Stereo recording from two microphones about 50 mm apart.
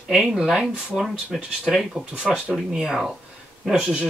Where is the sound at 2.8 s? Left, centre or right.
Centre.